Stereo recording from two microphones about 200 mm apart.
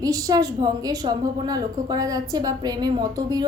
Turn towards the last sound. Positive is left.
turn(degrees=-20)  # may be behind; listen again after turning